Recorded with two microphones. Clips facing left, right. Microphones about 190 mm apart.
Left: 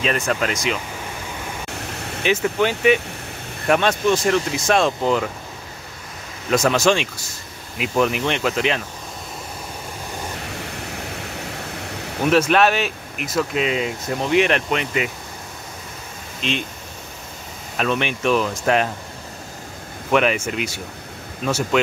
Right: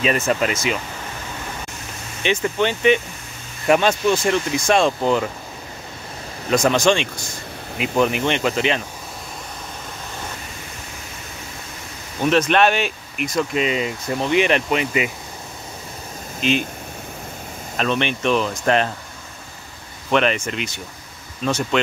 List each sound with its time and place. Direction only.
0.0 s speech: 5° right (ahead or behind)
1.7 s a sound: 65° left (ahead or behind)
2.2 s speech: 5° left (ahead or behind)
6.5 s speech: 5° left (ahead or behind)
10.9 s waves: 65° left (ahead or behind)
12.3 s speech: 5° left (ahead or behind)
16.3 s speech: 5° right (ahead or behind)
17.7 s speech: 5° left (ahead or behind)
20.1 s speech: 10° left (ahead or behind)